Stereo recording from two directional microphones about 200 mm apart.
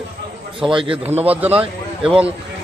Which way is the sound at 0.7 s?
25° right (ahead or behind).